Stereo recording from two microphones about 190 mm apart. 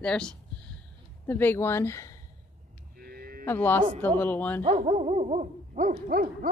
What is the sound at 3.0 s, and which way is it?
Cattle, 50° right (ahead or behind).